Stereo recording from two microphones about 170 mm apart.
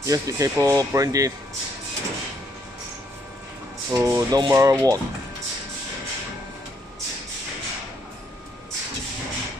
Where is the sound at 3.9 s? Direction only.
15° right (ahead or behind).